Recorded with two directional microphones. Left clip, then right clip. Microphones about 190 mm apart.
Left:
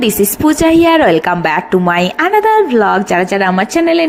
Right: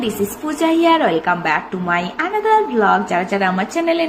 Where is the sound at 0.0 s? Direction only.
50° left (ahead or behind).